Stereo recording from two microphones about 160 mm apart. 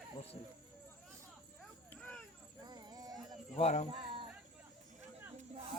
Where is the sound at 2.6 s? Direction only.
25° right (ahead or behind).